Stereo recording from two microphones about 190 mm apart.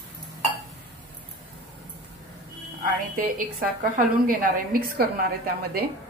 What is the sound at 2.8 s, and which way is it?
A woman's voice, 45° right (ahead or behind).